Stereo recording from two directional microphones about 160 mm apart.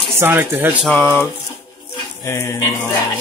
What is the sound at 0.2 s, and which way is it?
Speech, 10° right (ahead or behind).